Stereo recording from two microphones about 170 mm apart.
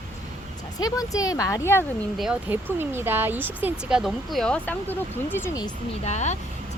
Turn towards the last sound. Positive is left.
turn(degrees=40)  # may be behind; listen again after turning